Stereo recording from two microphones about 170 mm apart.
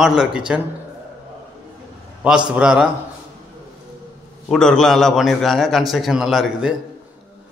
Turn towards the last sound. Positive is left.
turn(degrees=0)  # may be behind; listen again after turning